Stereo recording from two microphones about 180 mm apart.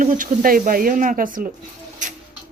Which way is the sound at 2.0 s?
45° right (ahead or behind).